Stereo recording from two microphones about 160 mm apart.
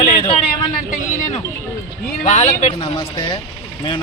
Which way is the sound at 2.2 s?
50° left (ahead or behind).